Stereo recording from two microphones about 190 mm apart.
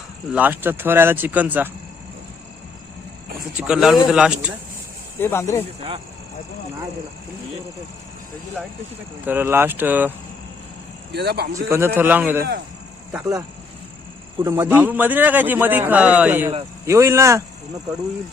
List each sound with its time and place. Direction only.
0.3 s a man's voice: 10° right (ahead or behind)
3.6 s speech: 5° right (ahead or behind)
5.2 s speech: 15° left (ahead or behind)
9.2 s a man's voice: 10° right (ahead or behind)
11.1 s speech: 60° right (ahead or behind)
11.9 s a man's voice: 10° right (ahead or behind)
14.4 s a man's voice: 15° right (ahead or behind)